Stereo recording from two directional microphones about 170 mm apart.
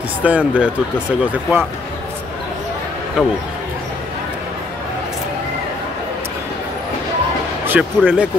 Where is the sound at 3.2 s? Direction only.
5° right (ahead or behind).